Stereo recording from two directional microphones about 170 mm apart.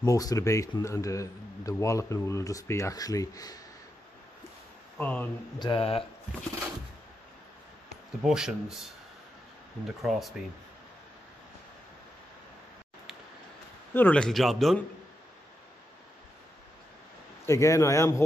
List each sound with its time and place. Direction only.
0.0 s speech: 20° left (ahead or behind)
4.9 s speech: 10° left (ahead or behind)
5.6 s speech: 30° left (ahead or behind)
8.2 s speech: 5° right (ahead or behind)
10.0 s speech: centre (ahead or behind)
13.9 s speech: 10° left (ahead or behind)
17.5 s a man's voice: 15° left (ahead or behind)